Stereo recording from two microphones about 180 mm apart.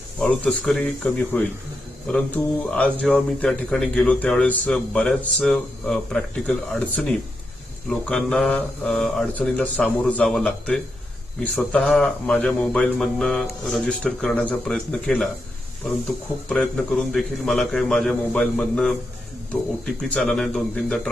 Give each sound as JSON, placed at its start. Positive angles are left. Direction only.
{"t": 0.2, "sound": "a man's voice", "side_deg": 5}
{"t": 20.1, "sound": "speech", "side_deg": 0}